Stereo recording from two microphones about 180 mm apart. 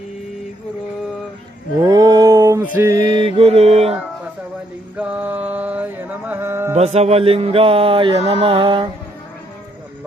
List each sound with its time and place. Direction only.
1.8 s a sound: 20° right (ahead or behind)
3.0 s mantra: 40° left (ahead or behind)
3.2 s mantra: 30° right (ahead or behind)
4.9 s mantra: 5° right (ahead or behind)
6.7 s music: 35° right (ahead or behind)